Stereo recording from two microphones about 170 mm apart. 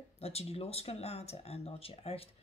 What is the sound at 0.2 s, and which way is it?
Speech, 35° left (ahead or behind).